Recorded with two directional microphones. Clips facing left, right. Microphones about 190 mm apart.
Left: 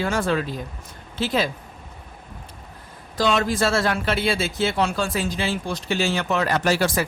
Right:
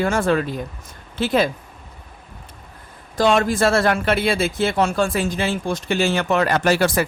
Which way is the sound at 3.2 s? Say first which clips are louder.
Right 4 dB; 50° right (ahead or behind).